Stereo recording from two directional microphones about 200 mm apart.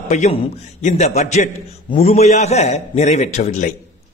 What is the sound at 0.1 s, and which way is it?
A man's voice, 30° left (ahead or behind).